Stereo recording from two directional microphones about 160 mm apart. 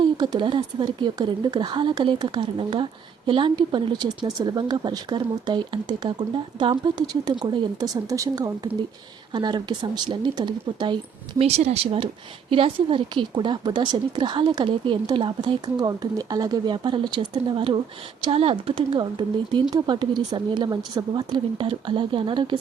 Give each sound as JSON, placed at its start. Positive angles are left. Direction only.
{"t": 0.0, "sound": "a woman's voice", "side_deg": -30}